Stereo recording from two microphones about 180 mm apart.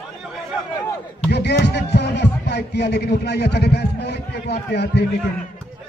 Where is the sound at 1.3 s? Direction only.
70° left (ahead or behind).